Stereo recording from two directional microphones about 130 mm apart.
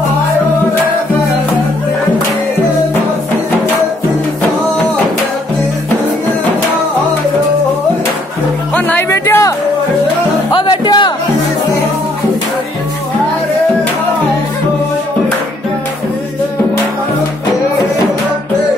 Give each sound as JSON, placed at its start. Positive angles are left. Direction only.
{"t": 8.7, "sound": "music", "side_deg": 10}
{"t": 9.1, "sound": "music", "side_deg": 20}
{"t": 10.5, "sound": "music", "side_deg": 40}